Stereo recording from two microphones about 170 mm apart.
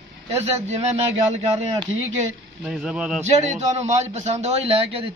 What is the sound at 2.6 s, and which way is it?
Speech, 5° right (ahead or behind).